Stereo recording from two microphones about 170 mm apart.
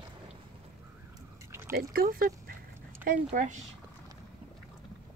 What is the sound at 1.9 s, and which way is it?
Speech, 55° right (ahead or behind).